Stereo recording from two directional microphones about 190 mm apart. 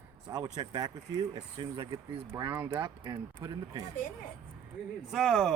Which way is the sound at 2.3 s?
15° right (ahead or behind).